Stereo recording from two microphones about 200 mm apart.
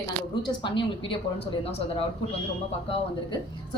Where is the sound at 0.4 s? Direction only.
25° left (ahead or behind).